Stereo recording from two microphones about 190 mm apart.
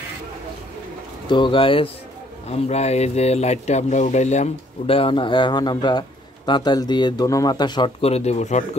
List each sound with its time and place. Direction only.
1.3 s speech: 25° left (ahead or behind)